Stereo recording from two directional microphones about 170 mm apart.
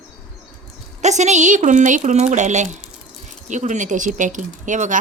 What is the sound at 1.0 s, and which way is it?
A woman's voice, 45° right (ahead or behind).